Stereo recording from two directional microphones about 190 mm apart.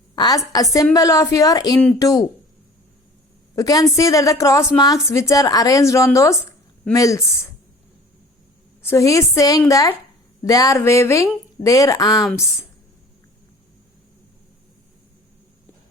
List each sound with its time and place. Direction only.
0.2 s a woman's voice: 20° left (ahead or behind)
3.5 s a woman's voice: 20° left (ahead or behind)
8.8 s a woman's voice: 15° left (ahead or behind)